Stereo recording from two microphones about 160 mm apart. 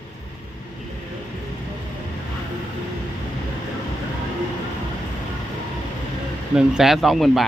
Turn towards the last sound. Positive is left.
turn(degrees=0)  # may be behind; listen again after turning